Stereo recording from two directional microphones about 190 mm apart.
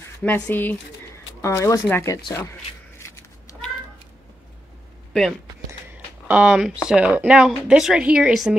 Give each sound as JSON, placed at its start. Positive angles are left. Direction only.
{"t": 0.2, "sound": "speech", "side_deg": 10}
{"t": 3.0, "sound": "cat", "side_deg": 15}
{"t": 6.2, "sound": "speech", "side_deg": -5}